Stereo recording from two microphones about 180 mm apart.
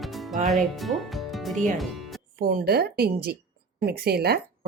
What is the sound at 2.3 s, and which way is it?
Speech, 55° right (ahead or behind).